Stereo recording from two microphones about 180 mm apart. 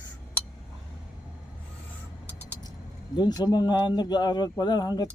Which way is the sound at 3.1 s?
20° left (ahead or behind).